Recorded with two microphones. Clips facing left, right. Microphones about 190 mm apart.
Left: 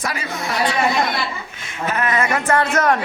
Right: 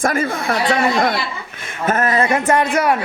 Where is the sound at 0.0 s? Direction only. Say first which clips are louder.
Right 7 dB; 50° right (ahead or behind).